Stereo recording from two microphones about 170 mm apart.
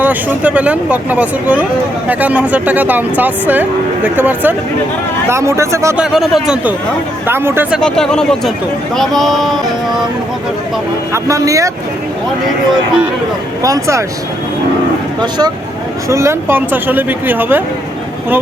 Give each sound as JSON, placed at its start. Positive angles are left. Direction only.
{"t": 0.0, "sound": "speech", "side_deg": -10}
{"t": 6.0, "sound": "speech", "side_deg": 0}
{"t": 7.3, "sound": "speech", "side_deg": -15}
{"t": 7.8, "sound": "speech", "side_deg": 5}
{"t": 11.1, "sound": "speech", "side_deg": -20}
{"t": 13.6, "sound": "speech", "side_deg": -20}
{"t": 15.2, "sound": "speech", "side_deg": -25}